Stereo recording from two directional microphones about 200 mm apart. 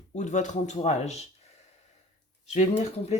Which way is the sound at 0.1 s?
35° left (ahead or behind).